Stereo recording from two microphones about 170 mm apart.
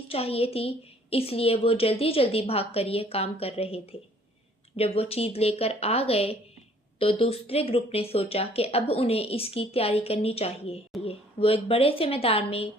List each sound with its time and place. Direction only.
0.1 s speech: 35° left (ahead or behind)
4.8 s speech: 35° left (ahead or behind)